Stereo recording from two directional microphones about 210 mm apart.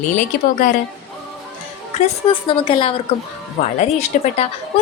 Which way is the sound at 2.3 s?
25° left (ahead or behind).